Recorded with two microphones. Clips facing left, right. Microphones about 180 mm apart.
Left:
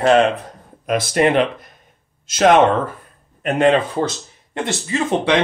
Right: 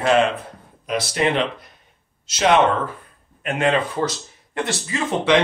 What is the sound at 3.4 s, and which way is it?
Speech, 35° left (ahead or behind).